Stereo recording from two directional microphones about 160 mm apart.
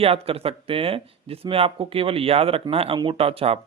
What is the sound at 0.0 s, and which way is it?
Speech, 35° right (ahead or behind).